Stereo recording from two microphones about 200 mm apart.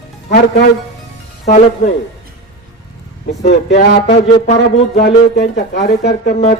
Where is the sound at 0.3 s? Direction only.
55° left (ahead or behind).